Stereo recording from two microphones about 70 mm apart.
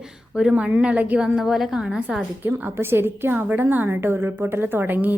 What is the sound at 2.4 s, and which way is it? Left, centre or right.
A woman's voice, right.